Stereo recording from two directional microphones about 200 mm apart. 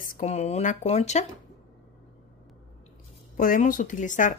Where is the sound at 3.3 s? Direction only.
40° left (ahead or behind).